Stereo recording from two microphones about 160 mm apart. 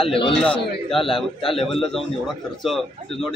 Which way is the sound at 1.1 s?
Centre (ahead or behind).